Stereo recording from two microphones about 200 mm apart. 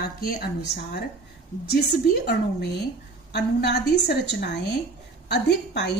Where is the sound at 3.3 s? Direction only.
55° left (ahead or behind).